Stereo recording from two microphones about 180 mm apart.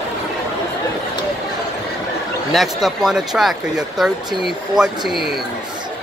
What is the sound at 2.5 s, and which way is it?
Speech, centre (ahead or behind).